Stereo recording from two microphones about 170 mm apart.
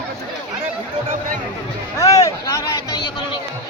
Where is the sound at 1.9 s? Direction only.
20° left (ahead or behind).